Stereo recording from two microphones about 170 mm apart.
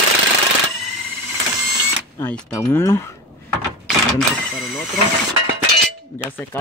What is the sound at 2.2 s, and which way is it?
Speech, 10° left (ahead or behind).